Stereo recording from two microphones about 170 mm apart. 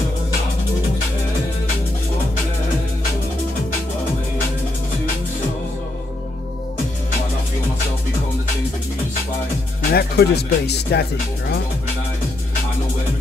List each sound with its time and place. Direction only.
9.9 s speech: 70° left (ahead or behind)